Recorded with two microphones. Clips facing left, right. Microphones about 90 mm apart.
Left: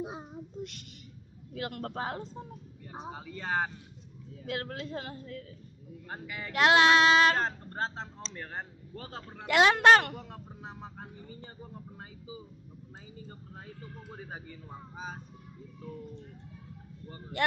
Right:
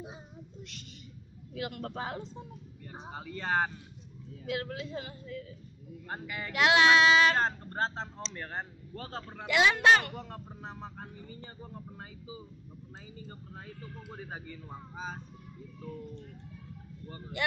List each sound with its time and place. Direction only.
0.0 s a child's voice: 90° left
1.5 s a woman's voice: 45° left (ahead or behind)
3.2 s speech: 5° left (ahead or behind)
4.5 s a woman's voice: 45° left (ahead or behind)
6.0 s speech: centre (ahead or behind)
6.5 s child singing: 40° left (ahead or behind)
7.3 s speech: centre (ahead or behind)
9.5 s a man's voice: 55° left (ahead or behind)
10.1 s speech: 5° left (ahead or behind)
14.1 s speech: 10° left (ahead or behind)